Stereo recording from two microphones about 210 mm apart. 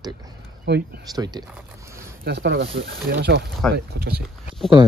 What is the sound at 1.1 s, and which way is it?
Speech, 20° right (ahead or behind).